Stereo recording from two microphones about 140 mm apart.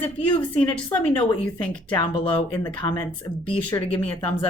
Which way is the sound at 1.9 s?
35° left (ahead or behind).